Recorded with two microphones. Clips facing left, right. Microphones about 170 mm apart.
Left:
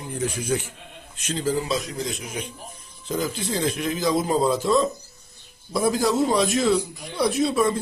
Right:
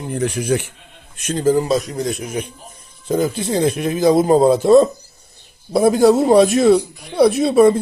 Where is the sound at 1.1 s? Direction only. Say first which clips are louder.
Right 9 dB; 55° right (ahead or behind).